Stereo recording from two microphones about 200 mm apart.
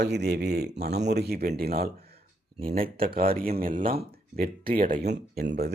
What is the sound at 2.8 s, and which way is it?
Speech, 45° right (ahead or behind).